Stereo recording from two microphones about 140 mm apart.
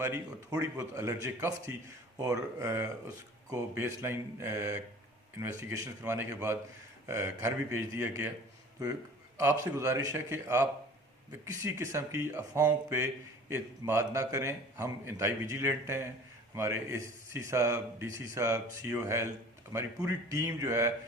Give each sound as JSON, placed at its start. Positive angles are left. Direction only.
{"t": 0.5, "sound": "a man's voice", "side_deg": -25}
{"t": 9.4, "sound": "a man's voice", "side_deg": -20}